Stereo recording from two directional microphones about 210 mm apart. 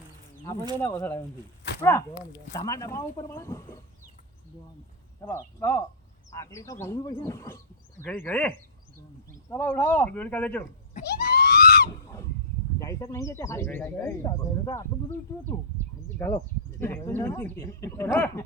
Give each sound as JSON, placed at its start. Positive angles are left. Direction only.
{"t": 0.8, "sound": "speech", "side_deg": 10}
{"t": 5.2, "sound": "speech", "side_deg": 10}
{"t": 10.9, "sound": "screaming", "side_deg": 45}
{"t": 12.8, "sound": "speech", "side_deg": 15}
{"t": 16.1, "sound": "speech", "side_deg": 10}